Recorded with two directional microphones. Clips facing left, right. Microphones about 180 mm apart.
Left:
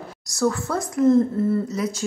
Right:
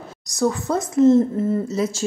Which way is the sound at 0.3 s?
20° right (ahead or behind).